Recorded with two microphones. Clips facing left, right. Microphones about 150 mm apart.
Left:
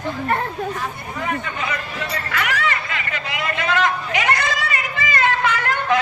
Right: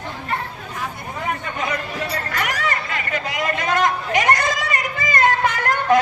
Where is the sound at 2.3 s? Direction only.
40° right (ahead or behind).